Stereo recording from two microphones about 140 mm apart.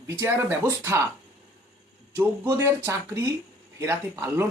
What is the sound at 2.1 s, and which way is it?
Speech, 20° right (ahead or behind).